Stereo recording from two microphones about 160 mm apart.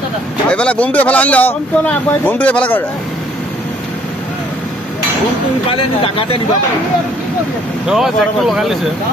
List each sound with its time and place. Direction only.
0.5 s speech: 5° left (ahead or behind)
5.7 s speech: 35° left (ahead or behind)
7.8 s speech: 5° right (ahead or behind)